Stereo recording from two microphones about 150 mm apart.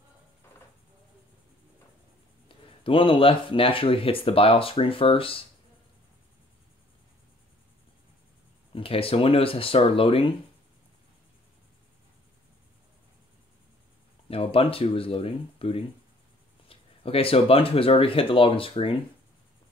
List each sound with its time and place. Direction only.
2.4 s speech: 35° left (ahead or behind)
8.7 s speech: 35° left (ahead or behind)
14.3 s speech: 40° left (ahead or behind)